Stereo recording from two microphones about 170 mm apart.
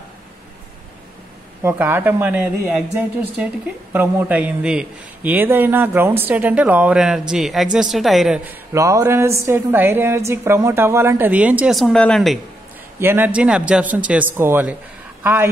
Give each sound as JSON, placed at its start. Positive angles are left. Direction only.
{"t": 1.6, "sound": "a woman's voice", "side_deg": -15}
{"t": 8.7, "sound": "a woman's voice", "side_deg": -20}
{"t": 11.8, "sound": "speech", "side_deg": 5}
{"t": 13.0, "sound": "a woman's voice", "side_deg": -10}